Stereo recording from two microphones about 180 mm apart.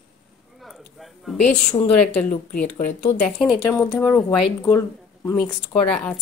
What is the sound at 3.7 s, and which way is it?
A woman's voice, 15° left (ahead or behind).